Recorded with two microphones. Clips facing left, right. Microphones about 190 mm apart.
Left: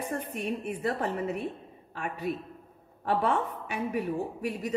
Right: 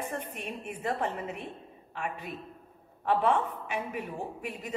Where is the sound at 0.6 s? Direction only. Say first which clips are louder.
Right 2 dB; 40° left (ahead or behind).